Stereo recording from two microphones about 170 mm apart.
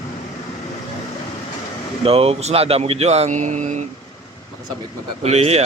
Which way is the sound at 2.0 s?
35° right (ahead or behind).